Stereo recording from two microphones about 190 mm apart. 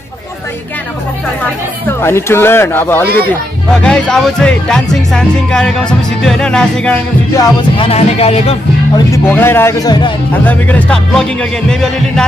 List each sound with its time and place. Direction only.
1.9 s speech: 10° left (ahead or behind)
7.3 s music: 20° left (ahead or behind)
8.9 s speech: 15° left (ahead or behind)
10.4 s speech: 10° left (ahead or behind)